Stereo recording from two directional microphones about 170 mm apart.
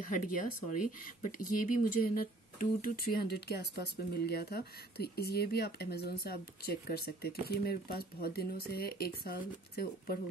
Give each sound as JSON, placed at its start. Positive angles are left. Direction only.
{"t": 0.0, "sound": "speech", "side_deg": 50}